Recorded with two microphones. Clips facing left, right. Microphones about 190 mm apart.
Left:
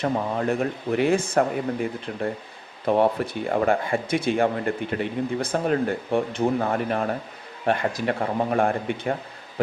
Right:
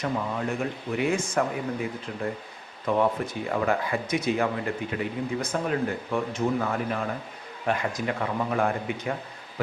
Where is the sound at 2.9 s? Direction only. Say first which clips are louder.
Left 4 dB; 35° left (ahead or behind).